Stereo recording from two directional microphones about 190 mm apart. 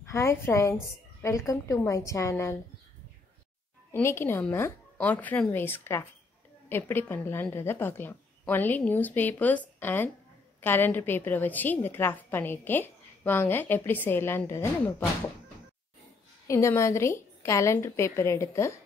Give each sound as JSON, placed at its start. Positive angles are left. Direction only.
{"t": 0.0, "sound": "a woman's voice", "side_deg": 15}
{"t": 3.9, "sound": "a woman's voice", "side_deg": 15}
{"t": 16.4, "sound": "a woman's voice", "side_deg": 15}